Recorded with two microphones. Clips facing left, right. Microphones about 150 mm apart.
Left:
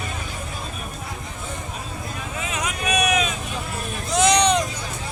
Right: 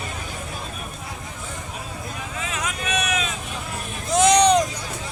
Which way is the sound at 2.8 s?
15° left (ahead or behind).